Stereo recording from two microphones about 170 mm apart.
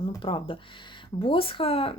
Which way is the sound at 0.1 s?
30° left (ahead or behind).